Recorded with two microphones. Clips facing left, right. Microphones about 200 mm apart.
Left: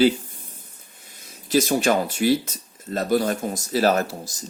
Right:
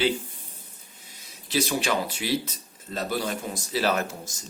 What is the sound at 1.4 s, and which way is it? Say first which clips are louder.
Speech: left 6 dB; 45° left (ahead or behind).